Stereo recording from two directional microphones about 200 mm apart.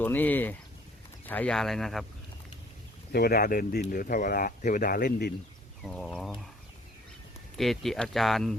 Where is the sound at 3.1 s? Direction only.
50° left (ahead or behind).